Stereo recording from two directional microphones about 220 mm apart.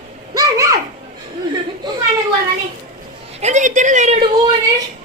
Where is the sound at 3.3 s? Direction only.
30° right (ahead or behind).